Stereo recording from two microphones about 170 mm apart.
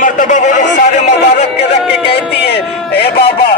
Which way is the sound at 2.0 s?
35° left (ahead or behind).